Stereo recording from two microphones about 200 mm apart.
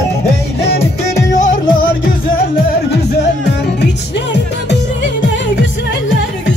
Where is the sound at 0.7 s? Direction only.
35° left (ahead or behind).